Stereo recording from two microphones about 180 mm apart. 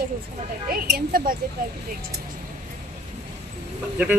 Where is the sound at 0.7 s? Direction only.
50° right (ahead or behind).